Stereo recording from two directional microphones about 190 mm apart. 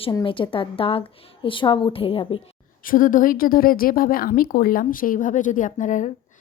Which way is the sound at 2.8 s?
45° left (ahead or behind).